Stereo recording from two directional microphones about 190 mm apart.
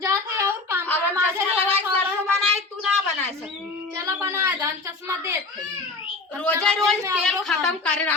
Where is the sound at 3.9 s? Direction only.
15° right (ahead or behind).